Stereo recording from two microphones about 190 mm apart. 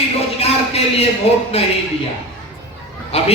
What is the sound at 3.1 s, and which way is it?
Speech, 35° left (ahead or behind).